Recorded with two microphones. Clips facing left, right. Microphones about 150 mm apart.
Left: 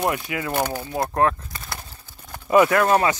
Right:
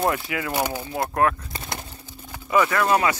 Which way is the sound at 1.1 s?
25° left (ahead or behind).